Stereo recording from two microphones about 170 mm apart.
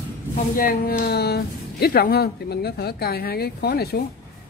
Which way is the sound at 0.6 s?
55° left (ahead or behind).